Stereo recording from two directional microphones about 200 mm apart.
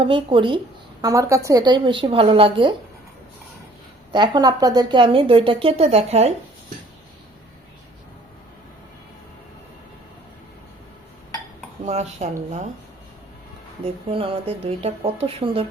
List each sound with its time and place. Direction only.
0.0 s a woman's voice: 25° right (ahead or behind)
4.1 s a woman's voice: 20° right (ahead or behind)
11.9 s speech: 35° right (ahead or behind)
13.8 s a woman's voice: 25° right (ahead or behind)